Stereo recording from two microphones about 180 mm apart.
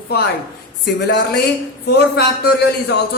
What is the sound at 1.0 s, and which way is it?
A man's voice, 65° left (ahead or behind).